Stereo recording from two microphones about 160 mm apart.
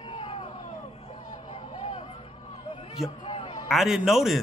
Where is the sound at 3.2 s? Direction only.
30° left (ahead or behind).